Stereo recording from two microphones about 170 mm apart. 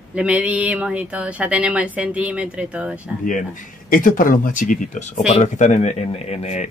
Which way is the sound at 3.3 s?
50° left (ahead or behind).